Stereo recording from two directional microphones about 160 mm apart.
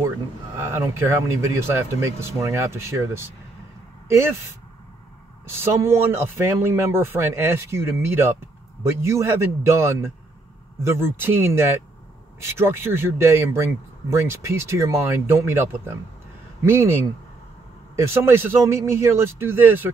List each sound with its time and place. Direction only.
0.6 s a man's voice: 15° right (ahead or behind)
5.6 s a man's voice: 15° right (ahead or behind)
17.9 s a man's voice: 15° right (ahead or behind)